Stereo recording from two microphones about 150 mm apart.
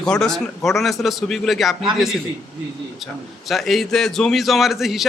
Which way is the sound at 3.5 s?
Centre (ahead or behind).